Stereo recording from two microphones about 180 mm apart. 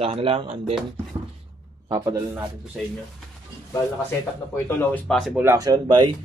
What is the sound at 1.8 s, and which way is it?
Speech, 20° right (ahead or behind).